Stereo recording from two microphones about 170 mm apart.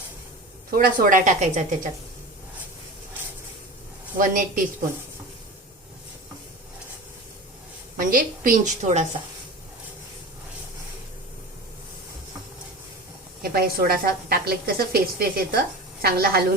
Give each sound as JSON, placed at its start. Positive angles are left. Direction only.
{"t": 0.7, "sound": "a woman's voice", "side_deg": -55}
{"t": 4.2, "sound": "a woman's voice", "side_deg": -50}
{"t": 7.9, "sound": "a woman's voice", "side_deg": -55}
{"t": 13.4, "sound": "a woman's voice", "side_deg": -60}